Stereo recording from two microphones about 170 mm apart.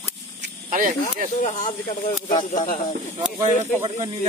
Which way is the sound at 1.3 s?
50° left (ahead or behind).